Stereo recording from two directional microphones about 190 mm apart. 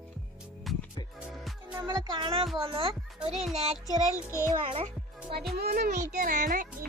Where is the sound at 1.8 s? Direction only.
25° right (ahead or behind).